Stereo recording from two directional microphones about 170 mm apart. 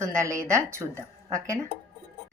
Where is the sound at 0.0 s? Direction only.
15° right (ahead or behind).